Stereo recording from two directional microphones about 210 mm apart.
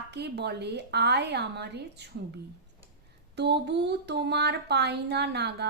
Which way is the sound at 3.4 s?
55° right (ahead or behind).